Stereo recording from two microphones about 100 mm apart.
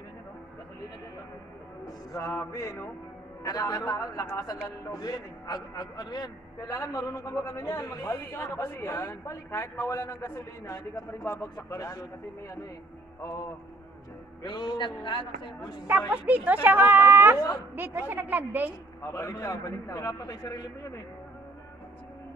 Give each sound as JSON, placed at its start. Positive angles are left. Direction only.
{"t": 2.4, "sound": "a man's voice", "side_deg": 35}
{"t": 14.4, "sound": "a man's voice", "side_deg": 45}
{"t": 16.1, "sound": "a woman's voice", "side_deg": -15}
{"t": 19.0, "sound": "a man's voice", "side_deg": 30}